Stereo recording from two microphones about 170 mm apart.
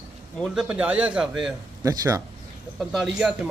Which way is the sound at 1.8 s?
20° right (ahead or behind).